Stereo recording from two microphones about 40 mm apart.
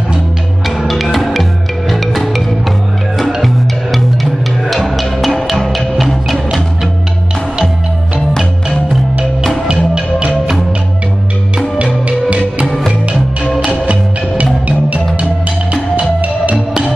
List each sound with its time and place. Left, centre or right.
0.7 s music: centre
9.7 s music: centre
11.8 s music: right
12.6 s music: centre
13.6 s music: right